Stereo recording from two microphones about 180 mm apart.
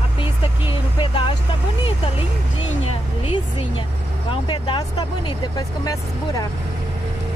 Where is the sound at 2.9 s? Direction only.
30° left (ahead or behind).